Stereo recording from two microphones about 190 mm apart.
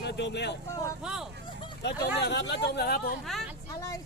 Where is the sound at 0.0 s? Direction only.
65° left (ahead or behind).